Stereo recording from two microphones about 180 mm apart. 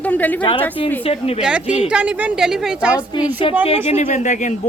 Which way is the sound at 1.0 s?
35° left (ahead or behind).